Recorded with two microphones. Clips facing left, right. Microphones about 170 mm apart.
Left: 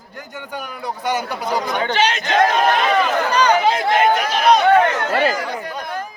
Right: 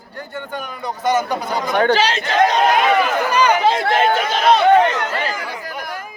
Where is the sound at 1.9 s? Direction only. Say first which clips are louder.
Right 1 dB; 30° right (ahead or behind).